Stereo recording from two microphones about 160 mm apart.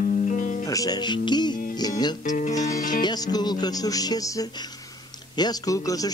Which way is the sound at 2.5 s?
20° left (ahead or behind).